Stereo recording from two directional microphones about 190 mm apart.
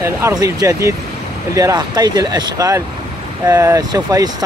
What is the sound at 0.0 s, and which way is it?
Speech, 15° right (ahead or behind).